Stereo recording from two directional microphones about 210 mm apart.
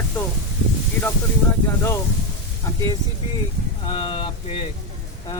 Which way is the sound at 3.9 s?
25° left (ahead or behind).